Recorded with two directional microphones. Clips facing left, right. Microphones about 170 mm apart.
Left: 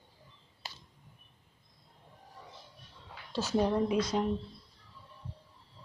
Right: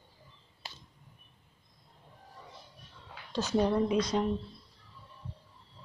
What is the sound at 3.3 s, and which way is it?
Speech, 5° left (ahead or behind).